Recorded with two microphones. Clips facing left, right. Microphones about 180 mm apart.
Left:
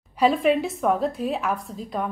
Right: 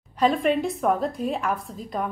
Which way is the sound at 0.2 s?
5° left (ahead or behind).